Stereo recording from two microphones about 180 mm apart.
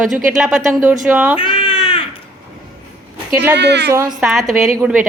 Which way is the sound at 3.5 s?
70° right (ahead or behind).